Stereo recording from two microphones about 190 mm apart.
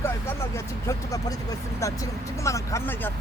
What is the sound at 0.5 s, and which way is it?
Speech, 15° left (ahead or behind).